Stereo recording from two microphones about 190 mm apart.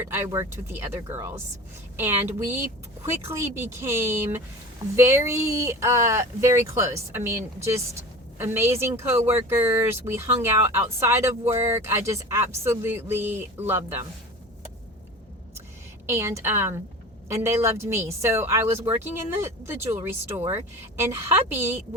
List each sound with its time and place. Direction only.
0.0 s speech: 15° right (ahead or behind)
16.0 s speech: 15° right (ahead or behind)